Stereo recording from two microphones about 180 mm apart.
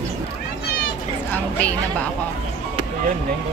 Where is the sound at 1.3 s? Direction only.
10° left (ahead or behind).